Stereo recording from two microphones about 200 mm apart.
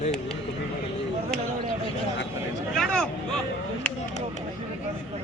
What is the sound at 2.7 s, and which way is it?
Speech, 5° left (ahead or behind).